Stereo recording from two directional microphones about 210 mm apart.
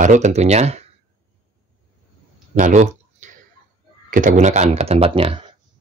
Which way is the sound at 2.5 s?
35° right (ahead or behind).